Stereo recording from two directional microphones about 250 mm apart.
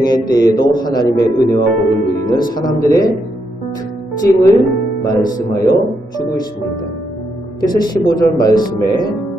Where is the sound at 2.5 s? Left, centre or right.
Centre.